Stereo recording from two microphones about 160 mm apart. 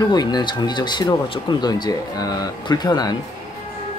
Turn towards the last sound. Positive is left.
turn(degrees=25)  # may be behind; listen again after turning